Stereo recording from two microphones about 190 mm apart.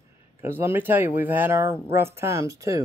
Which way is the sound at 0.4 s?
15° right (ahead or behind).